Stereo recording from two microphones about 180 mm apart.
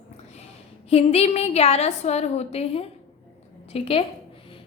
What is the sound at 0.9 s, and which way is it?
A woman's voice, 35° left (ahead or behind).